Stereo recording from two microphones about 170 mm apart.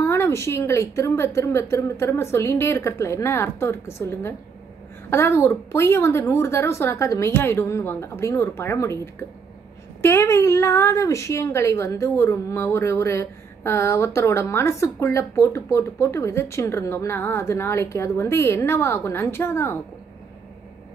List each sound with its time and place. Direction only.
0.0 s a woman's voice: 15° left (ahead or behind)